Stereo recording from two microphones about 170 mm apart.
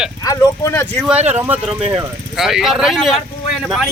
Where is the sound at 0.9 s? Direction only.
5° right (ahead or behind).